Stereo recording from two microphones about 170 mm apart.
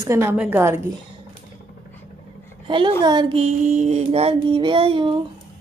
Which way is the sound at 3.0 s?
25° right (ahead or behind).